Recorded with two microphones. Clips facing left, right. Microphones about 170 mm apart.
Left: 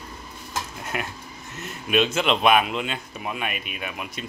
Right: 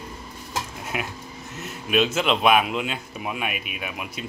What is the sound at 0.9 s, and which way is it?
Speech, 5° right (ahead or behind).